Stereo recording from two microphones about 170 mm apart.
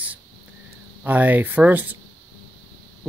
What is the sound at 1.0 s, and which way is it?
Speech, 10° right (ahead or behind).